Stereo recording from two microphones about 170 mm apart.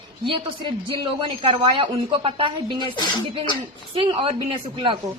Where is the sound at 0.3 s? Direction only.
30° right (ahead or behind).